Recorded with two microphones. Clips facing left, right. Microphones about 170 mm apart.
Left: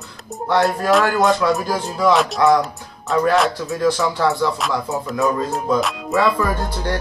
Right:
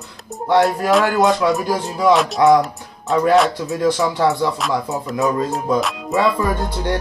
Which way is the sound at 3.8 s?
15° right (ahead or behind).